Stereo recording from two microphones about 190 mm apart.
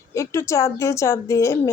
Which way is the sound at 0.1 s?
15° left (ahead or behind).